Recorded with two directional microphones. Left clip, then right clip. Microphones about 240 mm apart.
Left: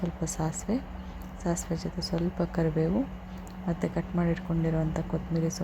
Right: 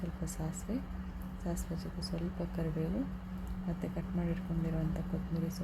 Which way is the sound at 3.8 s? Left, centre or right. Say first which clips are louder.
Left 10 dB; centre.